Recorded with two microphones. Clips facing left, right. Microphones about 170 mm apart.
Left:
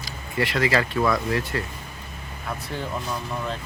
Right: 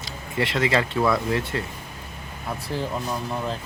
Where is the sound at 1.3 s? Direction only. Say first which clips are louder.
Right 1 dB; 25° right (ahead or behind).